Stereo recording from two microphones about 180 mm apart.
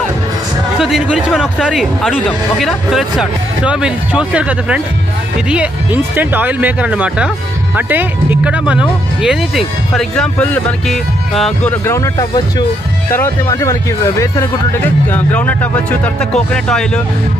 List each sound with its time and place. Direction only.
0.7 s speech: 5° right (ahead or behind)
11.8 s speech: 15° left (ahead or behind)